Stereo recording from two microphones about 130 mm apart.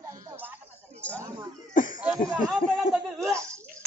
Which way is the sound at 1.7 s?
90° left.